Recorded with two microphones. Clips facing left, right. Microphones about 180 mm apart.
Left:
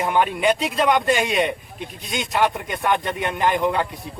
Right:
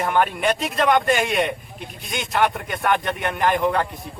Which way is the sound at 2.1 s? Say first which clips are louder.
Even; 20° left (ahead or behind).